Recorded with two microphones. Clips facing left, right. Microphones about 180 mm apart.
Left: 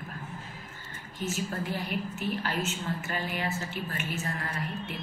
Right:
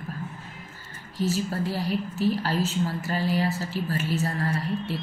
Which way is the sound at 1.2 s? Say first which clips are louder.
Right 6 dB; 35° right (ahead or behind).